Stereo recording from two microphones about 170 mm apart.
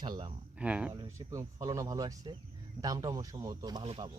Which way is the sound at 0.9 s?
15° right (ahead or behind).